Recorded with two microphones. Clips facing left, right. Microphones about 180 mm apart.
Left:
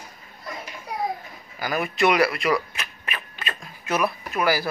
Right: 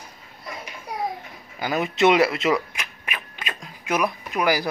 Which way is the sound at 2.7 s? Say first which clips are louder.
Even; 10° right (ahead or behind).